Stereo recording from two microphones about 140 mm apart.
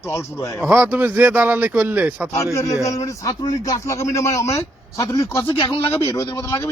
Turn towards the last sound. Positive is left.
turn(degrees=20)  # may be behind; listen again after turning